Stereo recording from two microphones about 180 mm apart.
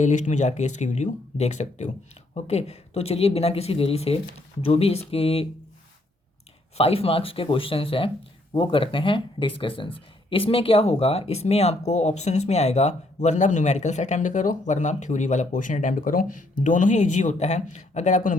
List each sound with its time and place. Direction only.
0.0 s speech: 40° left (ahead or behind)
6.7 s speech: 35° left (ahead or behind)